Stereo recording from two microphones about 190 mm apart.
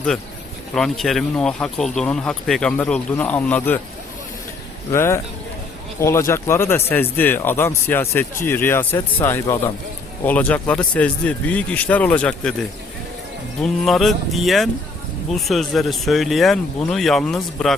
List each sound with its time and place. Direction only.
0.7 s speech: centre (ahead or behind)
4.9 s speech: 15° left (ahead or behind)
13.6 s speech: centre (ahead or behind)